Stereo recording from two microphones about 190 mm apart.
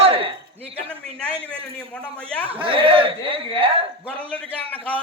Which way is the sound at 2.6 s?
30° right (ahead or behind).